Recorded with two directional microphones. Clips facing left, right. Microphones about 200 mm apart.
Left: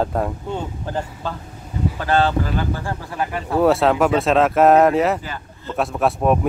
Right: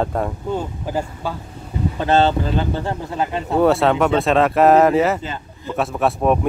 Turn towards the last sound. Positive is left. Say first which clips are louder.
# even
turn(degrees=0)  # may be behind; listen again after turning